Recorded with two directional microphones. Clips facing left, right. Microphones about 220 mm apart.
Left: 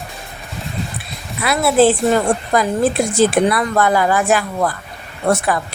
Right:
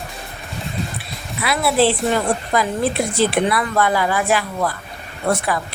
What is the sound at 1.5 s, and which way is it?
A woman's voice, 45° left (ahead or behind).